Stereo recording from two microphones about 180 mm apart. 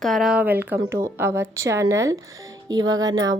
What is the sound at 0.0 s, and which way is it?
A woman's voice, centre (ahead or behind).